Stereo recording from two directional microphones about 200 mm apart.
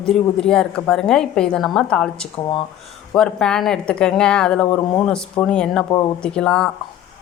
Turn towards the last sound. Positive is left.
turn(degrees=5)  # may be behind; listen again after turning